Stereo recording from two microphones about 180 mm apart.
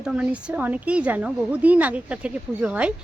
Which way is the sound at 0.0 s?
5° right (ahead or behind).